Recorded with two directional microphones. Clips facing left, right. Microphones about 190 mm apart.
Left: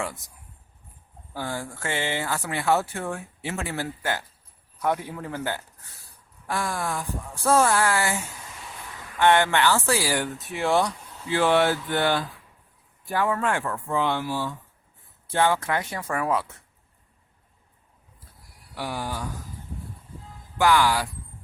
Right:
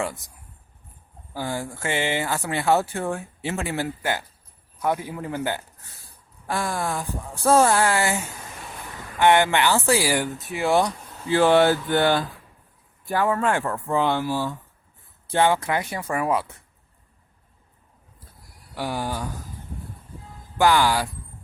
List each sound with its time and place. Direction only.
1.3 s speech: 10° right (ahead or behind)
6.5 s speech: 25° right (ahead or behind)
9.1 s speech: 10° right (ahead or behind)
11.3 s speech: 35° right (ahead or behind)
15.3 s speech: 20° right (ahead or behind)
18.7 s speech: 35° right (ahead or behind)
20.6 s speech: 30° right (ahead or behind)